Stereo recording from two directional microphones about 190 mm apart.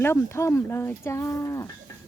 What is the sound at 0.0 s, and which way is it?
Speech, 10° left (ahead or behind).